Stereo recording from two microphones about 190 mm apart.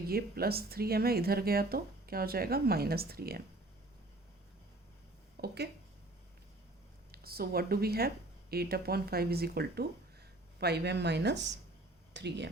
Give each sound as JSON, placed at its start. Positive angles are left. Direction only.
{"t": 0.1, "sound": "speech", "side_deg": -55}
{"t": 5.4, "sound": "speech", "side_deg": -55}
{"t": 7.1, "sound": "speech", "side_deg": -55}